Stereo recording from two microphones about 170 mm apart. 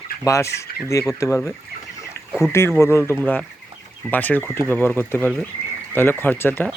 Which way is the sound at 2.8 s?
15° left (ahead or behind).